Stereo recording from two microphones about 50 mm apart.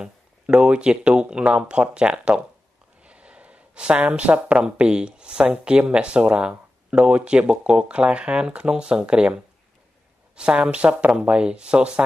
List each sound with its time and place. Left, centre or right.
0.0 s speech: centre
3.0 s a sound: right
4.0 s speech: right